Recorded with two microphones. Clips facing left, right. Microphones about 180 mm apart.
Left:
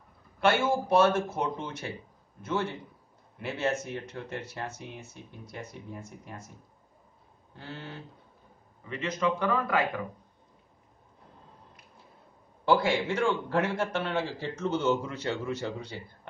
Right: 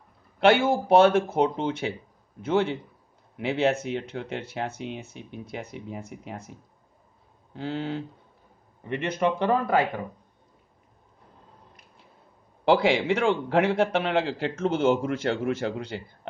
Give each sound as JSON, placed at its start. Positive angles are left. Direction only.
{"t": 0.4, "sound": "speech", "side_deg": -65}
{"t": 7.5, "sound": "speech", "side_deg": -85}
{"t": 8.8, "sound": "speech", "side_deg": -65}
{"t": 9.5, "sound": "speech", "side_deg": -35}
{"t": 12.6, "sound": "speech", "side_deg": -85}